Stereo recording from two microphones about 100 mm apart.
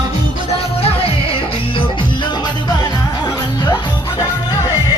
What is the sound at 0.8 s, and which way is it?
Music, 70° left (ahead or behind).